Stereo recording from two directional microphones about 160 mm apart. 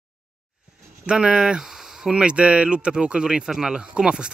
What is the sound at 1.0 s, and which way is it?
Speech, 5° right (ahead or behind).